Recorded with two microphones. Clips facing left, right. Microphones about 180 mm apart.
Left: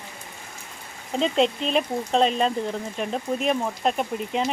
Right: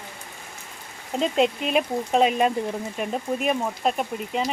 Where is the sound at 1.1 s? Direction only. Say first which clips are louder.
Even; 5° right (ahead or behind).